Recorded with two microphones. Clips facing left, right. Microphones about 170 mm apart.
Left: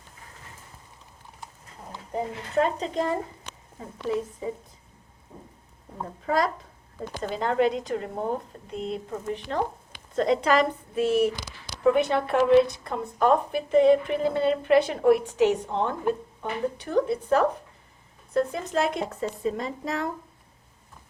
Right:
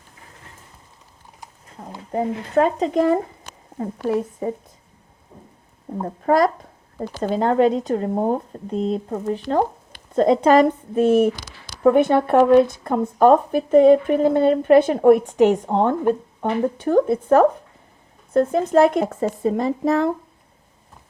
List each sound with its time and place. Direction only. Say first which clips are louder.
2.1 s speech: right 6 dB; 60° right (ahead or behind)
6.0 s speech: right 8 dB; 45° right (ahead or behind)
7.2 s speech: right 7 dB; 40° right (ahead or behind)